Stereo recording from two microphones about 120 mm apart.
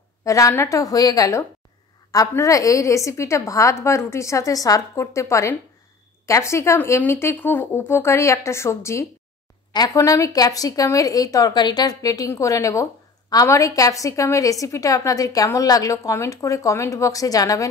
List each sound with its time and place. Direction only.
0.2 s a woman's voice: 25° left (ahead or behind)
9.7 s a woman's voice: 35° left (ahead or behind)